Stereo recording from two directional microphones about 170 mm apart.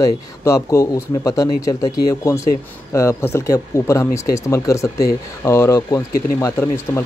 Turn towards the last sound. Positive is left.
turn(degrees=15)  # may be behind; listen again after turning